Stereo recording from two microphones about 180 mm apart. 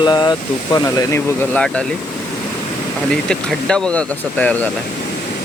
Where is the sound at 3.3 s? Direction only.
5° left (ahead or behind).